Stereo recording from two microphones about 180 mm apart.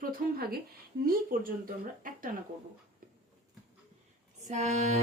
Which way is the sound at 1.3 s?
50° right (ahead or behind).